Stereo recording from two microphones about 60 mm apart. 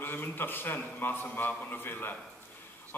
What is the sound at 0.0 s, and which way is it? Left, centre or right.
A man's voice, left.